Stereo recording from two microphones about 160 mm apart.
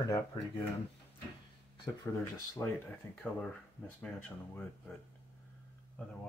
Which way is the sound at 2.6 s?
20° left (ahead or behind).